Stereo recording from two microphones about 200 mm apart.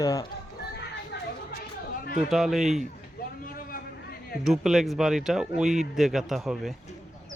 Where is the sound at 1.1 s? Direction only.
55° left (ahead or behind).